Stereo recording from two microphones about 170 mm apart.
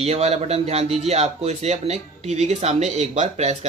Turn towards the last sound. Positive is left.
turn(degrees=-40)  # may be behind; listen again after turning